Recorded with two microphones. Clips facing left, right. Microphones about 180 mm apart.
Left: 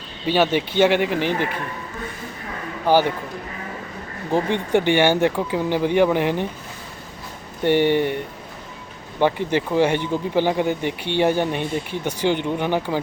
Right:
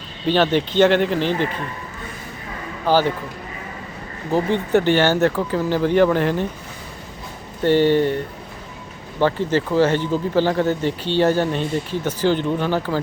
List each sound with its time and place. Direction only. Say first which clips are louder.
0.3 s speech: right 1 dB; 10° left (ahead or behind)
2.8 s speech: even; 15° left (ahead or behind)
4.3 s speech: right 2 dB; 15° left (ahead or behind)
7.6 s speech: right 2 dB; 15° left (ahead or behind)
9.2 s speech: right 1 dB; 15° left (ahead or behind)